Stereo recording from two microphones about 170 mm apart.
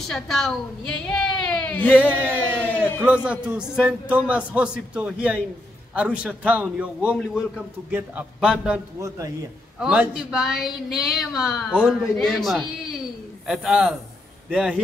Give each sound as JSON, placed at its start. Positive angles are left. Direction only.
{"t": 0.0, "sound": "a woman's voice", "side_deg": 0}
{"t": 2.0, "sound": "a man's voice", "side_deg": -10}
{"t": 2.5, "sound": "a sound", "side_deg": -10}
{"t": 3.3, "sound": "a man's voice", "side_deg": -5}
{"t": 7.2, "sound": "speech", "side_deg": 5}
{"t": 7.9, "sound": "a man's voice", "side_deg": -10}
{"t": 9.0, "sound": "speech", "side_deg": -20}
{"t": 9.8, "sound": "a man's voice", "side_deg": -5}